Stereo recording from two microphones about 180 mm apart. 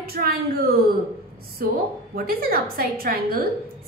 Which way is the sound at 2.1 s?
55° right (ahead or behind).